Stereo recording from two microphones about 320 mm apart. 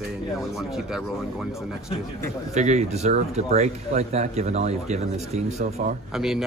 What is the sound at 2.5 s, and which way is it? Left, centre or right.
A man's voice, right.